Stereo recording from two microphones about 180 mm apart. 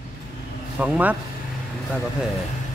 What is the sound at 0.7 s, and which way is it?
Speech, 5° right (ahead or behind).